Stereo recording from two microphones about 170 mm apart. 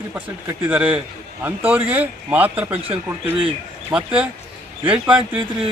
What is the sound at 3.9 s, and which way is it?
Speech, 10° right (ahead or behind).